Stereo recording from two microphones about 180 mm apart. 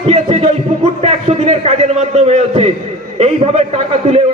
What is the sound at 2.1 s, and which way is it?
A man's voice, 35° right (ahead or behind).